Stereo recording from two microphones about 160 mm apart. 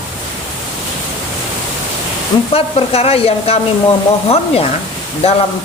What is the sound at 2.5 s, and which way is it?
Speech, 40° left (ahead or behind).